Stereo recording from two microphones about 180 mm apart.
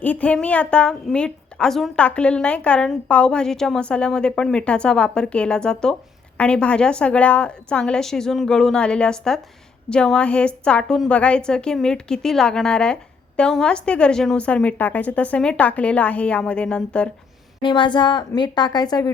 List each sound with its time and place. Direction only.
0.0 s a woman's voice: 10° left (ahead or behind)
17.6 s a woman's voice: 25° left (ahead or behind)